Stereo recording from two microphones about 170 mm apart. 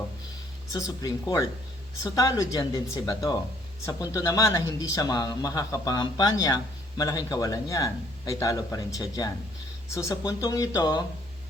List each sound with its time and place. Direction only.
0.7 s speech: 20° left (ahead or behind)